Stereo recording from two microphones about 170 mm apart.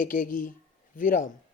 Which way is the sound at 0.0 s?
55° left (ahead or behind).